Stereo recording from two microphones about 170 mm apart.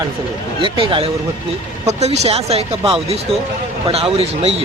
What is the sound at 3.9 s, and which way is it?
Speech, 35° right (ahead or behind).